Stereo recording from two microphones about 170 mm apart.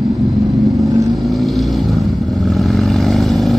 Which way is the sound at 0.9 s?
20° right (ahead or behind).